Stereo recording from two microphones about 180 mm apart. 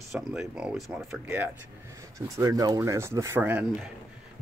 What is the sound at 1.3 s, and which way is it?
Speech, 15° right (ahead or behind).